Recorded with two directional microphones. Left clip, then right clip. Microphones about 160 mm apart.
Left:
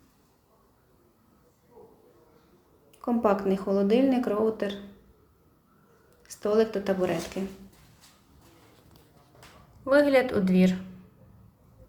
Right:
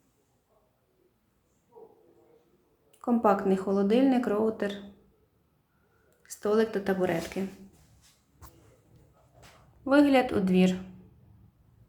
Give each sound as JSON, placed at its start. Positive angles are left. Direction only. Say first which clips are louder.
{"t": 3.0, "sound": "speech", "louder": "even", "side_deg": -15}
{"t": 6.2, "sound": "speech", "louder": "left 2 dB", "side_deg": -10}
{"t": 9.8, "sound": "speech", "louder": "left 2 dB", "side_deg": -15}